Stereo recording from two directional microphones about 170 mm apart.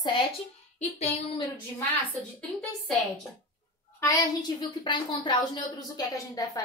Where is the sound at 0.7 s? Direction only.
40° left (ahead or behind).